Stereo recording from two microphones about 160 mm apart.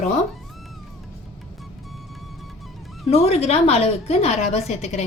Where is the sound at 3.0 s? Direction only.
40° left (ahead or behind).